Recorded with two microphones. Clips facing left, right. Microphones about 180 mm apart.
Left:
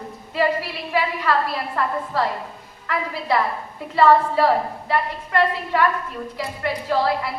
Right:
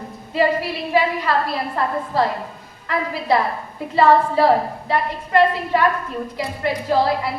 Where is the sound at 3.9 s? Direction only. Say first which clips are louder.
Right 1 dB; 15° right (ahead or behind).